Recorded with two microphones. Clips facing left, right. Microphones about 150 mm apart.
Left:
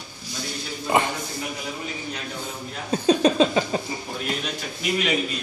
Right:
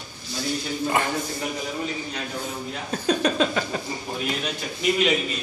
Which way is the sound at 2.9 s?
20° left (ahead or behind).